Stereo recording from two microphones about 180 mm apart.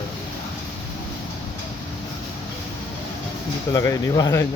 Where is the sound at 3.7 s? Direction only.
20° left (ahead or behind).